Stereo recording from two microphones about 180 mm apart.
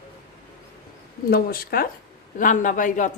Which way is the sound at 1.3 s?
55° left (ahead or behind).